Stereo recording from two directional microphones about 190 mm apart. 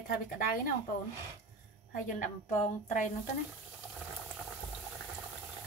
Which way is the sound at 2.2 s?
40° left (ahead or behind).